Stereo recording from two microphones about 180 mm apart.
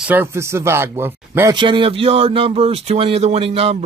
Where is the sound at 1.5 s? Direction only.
25° right (ahead or behind).